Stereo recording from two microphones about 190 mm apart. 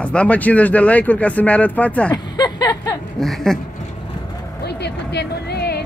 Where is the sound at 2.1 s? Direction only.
20° left (ahead or behind).